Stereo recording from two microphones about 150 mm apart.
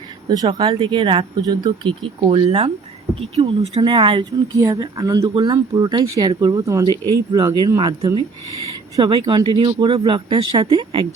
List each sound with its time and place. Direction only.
0.4 s speech: 35° right (ahead or behind)
3.8 s speech: 25° right (ahead or behind)